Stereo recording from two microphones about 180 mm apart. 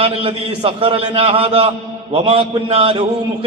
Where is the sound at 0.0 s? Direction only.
30° right (ahead or behind).